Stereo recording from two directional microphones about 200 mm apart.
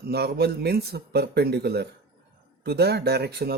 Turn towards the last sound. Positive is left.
turn(degrees=-55)  # may be behind; listen again after turning